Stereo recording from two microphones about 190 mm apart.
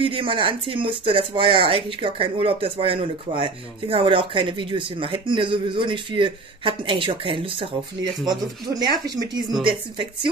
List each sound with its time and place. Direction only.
0.0 s speech: 30° right (ahead or behind)